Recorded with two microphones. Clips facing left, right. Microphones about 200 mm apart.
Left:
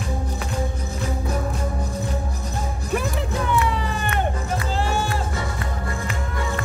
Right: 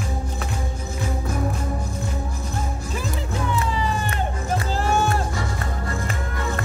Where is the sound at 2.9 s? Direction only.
60° left (ahead or behind).